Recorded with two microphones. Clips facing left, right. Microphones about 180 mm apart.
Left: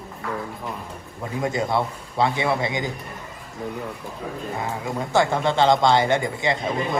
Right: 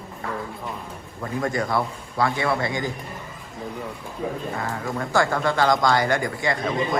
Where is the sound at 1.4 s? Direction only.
20° left (ahead or behind).